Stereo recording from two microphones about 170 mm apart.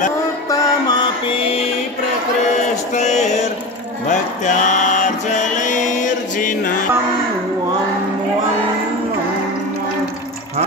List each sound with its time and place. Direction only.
0.5 s music: 25° left (ahead or behind)
2.9 s a sound: 45° left (ahead or behind)
4.1 s mantra: 45° left (ahead or behind)